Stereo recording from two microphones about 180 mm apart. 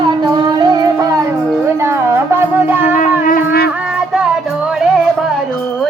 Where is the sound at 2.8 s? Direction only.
45° left (ahead or behind).